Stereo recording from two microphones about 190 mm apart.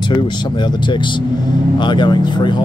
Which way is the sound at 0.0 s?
25° left (ahead or behind).